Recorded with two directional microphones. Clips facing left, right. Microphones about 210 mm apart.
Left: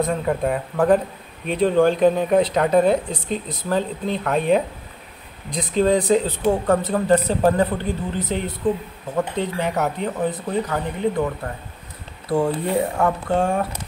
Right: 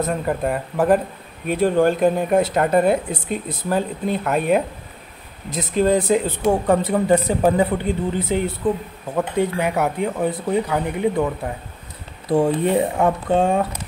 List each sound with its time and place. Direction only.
0.0 s speech: centre (ahead or behind); by 13.7 s 20° right (ahead or behind)